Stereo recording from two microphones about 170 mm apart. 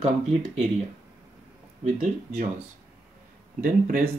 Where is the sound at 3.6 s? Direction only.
55° right (ahead or behind).